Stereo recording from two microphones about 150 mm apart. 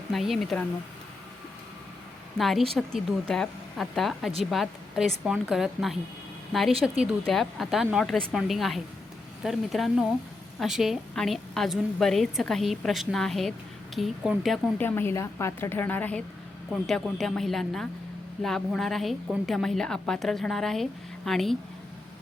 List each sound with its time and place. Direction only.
0.1 s a woman's voice: centre (ahead or behind)
2.4 s a woman's voice: centre (ahead or behind)
14.8 s a woman's voice: 15° left (ahead or behind)